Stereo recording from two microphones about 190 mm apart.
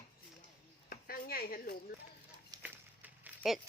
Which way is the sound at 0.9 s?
50° left (ahead or behind).